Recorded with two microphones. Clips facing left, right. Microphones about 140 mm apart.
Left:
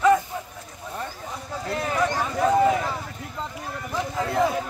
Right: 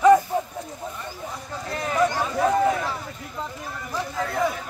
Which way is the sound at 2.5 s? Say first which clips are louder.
Left 4 dB; 15° left (ahead or behind).